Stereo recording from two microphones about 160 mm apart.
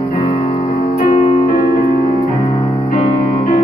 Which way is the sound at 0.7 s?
50° left (ahead or behind).